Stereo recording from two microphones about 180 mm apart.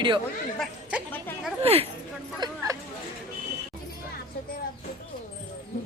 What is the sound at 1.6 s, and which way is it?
Speech, 35° right (ahead or behind).